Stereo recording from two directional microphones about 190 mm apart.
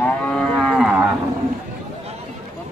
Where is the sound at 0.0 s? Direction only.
5° left (ahead or behind).